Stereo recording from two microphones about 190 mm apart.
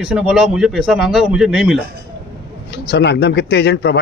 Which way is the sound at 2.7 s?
65° left (ahead or behind).